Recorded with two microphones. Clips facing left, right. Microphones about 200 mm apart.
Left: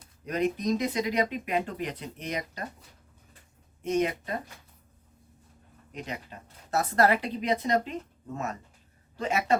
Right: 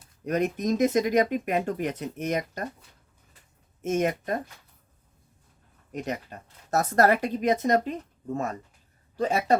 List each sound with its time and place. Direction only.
0.3 s speech: 50° right (ahead or behind)
3.8 s speech: 50° right (ahead or behind)
5.9 s speech: 45° right (ahead or behind)
9.1 s speech: 35° right (ahead or behind)